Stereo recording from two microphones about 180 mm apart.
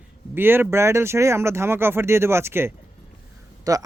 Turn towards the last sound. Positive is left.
turn(degrees=-20)  # may be behind; listen again after turning